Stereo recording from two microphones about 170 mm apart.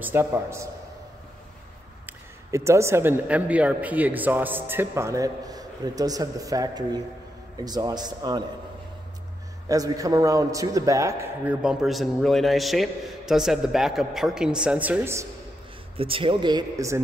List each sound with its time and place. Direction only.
0.0 s speech: 15° right (ahead or behind)
2.0 s a man's voice: 15° right (ahead or behind)
9.7 s a man's voice: 20° right (ahead or behind)
11.6 s a man's voice: centre (ahead or behind)
16.0 s a man's voice: 30° right (ahead or behind)